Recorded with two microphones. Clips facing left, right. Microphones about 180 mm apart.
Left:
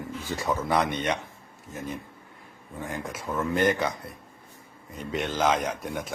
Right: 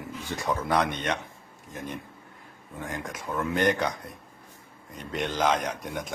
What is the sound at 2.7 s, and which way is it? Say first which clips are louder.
A man's voice: left 1 dB; 5° left (ahead or behind).